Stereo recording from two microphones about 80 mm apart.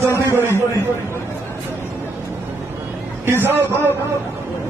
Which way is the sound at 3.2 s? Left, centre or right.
Right.